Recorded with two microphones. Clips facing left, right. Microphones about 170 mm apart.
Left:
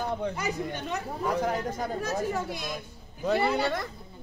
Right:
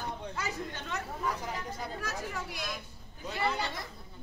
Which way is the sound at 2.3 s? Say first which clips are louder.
Left 7 dB; 20° left (ahead or behind).